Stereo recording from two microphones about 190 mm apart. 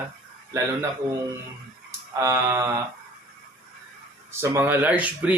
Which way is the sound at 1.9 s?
15° right (ahead or behind).